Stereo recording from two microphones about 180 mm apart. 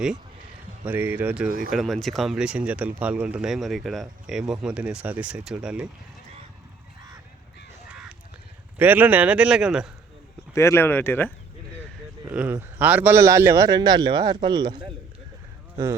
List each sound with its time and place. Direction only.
0.9 s a man's voice: 10° right (ahead or behind)
1.5 s speech: 55° right (ahead or behind)
1.7 s a man's voice: centre (ahead or behind)
8.8 s a man's voice: 10° right (ahead or behind)
10.5 s speech: 15° left (ahead or behind)
12.2 s a man's voice: 10° right (ahead or behind)